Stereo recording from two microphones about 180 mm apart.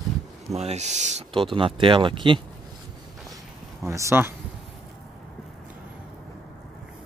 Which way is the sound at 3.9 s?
15° right (ahead or behind).